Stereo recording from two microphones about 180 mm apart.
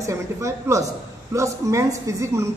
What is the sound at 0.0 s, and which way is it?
A woman's voice, 15° right (ahead or behind).